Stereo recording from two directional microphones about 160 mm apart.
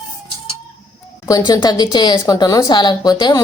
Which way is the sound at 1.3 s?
25° left (ahead or behind).